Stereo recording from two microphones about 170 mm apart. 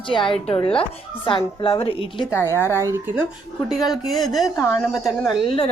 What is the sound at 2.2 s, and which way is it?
Speech, 15° left (ahead or behind).